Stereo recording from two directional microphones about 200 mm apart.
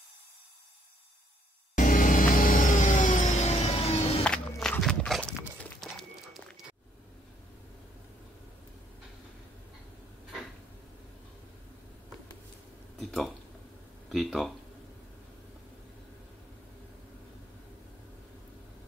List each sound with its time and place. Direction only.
1.8 s vehicle: 40° left (ahead or behind)
4.2 s walk: 5° left (ahead or behind)
5.6 s a sound: centre (ahead or behind)
14.1 s speech: centre (ahead or behind)